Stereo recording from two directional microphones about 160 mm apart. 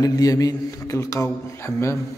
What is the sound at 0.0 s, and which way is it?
A man's voice, 20° left (ahead or behind).